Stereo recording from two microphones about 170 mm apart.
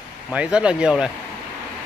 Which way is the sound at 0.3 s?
5° right (ahead or behind).